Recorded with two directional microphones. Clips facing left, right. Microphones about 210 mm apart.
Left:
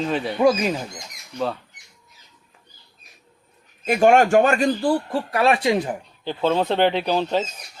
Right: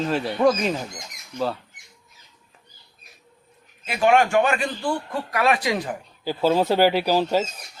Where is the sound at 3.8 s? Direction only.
45° left (ahead or behind); by 6.0 s 20° left (ahead or behind).